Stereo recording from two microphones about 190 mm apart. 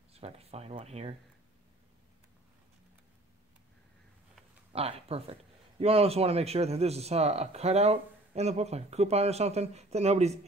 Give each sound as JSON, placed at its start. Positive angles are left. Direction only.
{"t": 0.1, "sound": "speech", "side_deg": -30}
{"t": 4.7, "sound": "speech", "side_deg": -30}